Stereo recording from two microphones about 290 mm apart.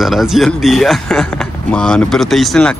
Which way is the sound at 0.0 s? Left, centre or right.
Centre.